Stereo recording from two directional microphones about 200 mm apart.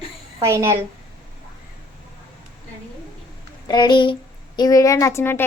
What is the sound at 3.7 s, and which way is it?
A woman's voice, 20° left (ahead or behind).